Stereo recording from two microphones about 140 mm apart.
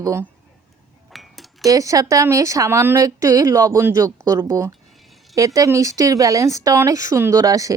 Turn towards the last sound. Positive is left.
turn(degrees=-25)  # may be behind; listen again after turning